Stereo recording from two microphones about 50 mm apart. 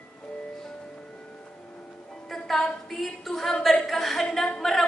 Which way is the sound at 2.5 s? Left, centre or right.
Centre.